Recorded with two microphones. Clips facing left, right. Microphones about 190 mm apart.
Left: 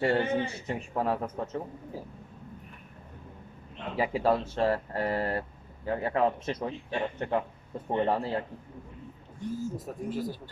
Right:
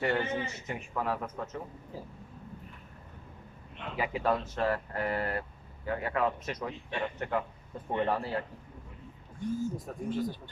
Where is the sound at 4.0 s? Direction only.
30° left (ahead or behind).